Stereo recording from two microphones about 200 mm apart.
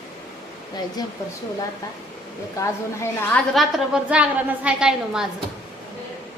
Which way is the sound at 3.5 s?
5° right (ahead or behind).